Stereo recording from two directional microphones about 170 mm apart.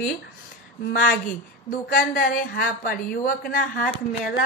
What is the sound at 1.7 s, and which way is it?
A woman's voice, 55° left (ahead or behind).